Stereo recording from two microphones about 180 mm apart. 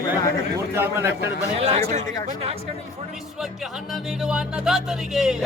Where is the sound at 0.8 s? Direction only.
15° right (ahead or behind).